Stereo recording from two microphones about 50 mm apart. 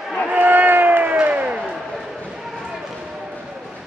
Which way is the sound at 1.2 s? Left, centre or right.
Right.